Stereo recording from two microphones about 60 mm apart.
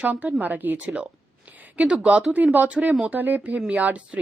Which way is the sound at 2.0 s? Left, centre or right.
Right.